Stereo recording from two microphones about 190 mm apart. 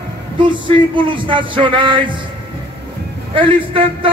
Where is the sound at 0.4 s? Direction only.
25° right (ahead or behind).